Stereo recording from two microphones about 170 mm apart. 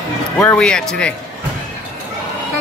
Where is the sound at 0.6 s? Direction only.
5° left (ahead or behind).